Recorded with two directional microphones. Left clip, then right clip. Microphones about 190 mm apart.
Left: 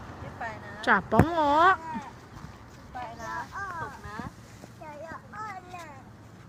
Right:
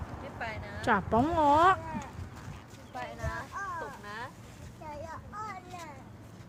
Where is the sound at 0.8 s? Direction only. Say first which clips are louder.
Left 4 dB; 5° right (ahead or behind).